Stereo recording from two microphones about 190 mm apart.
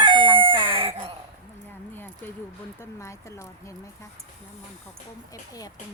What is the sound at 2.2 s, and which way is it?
Speech, 10° left (ahead or behind).